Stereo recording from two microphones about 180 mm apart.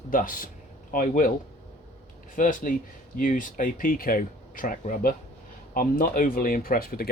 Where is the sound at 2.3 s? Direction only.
45° left (ahead or behind).